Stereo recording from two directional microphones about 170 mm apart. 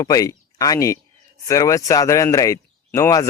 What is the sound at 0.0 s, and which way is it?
Speech, 20° left (ahead or behind).